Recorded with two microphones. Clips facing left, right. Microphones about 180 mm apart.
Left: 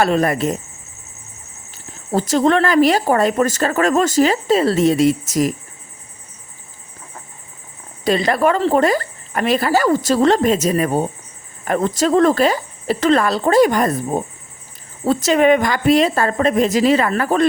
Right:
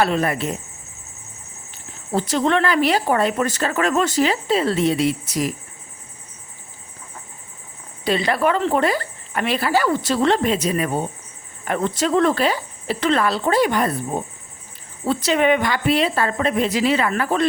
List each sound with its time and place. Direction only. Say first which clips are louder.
0.0 s speech: left 4 dB; 45° left (ahead or behind)
1.7 s speech: left 3 dB; 40° left (ahead or behind)
8.0 s a woman's voice: left 3 dB; 40° left (ahead or behind)
15.0 s speech: left 4 dB; 40° left (ahead or behind)